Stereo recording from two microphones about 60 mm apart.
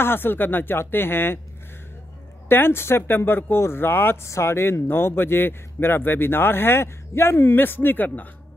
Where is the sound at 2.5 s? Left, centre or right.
Left.